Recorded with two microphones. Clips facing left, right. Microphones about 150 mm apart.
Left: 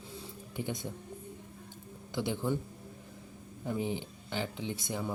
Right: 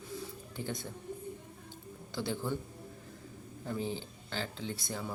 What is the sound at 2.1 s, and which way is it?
Speech, 20° left (ahead or behind).